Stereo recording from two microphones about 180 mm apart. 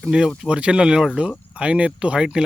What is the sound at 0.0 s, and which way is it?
Speech, centre (ahead or behind).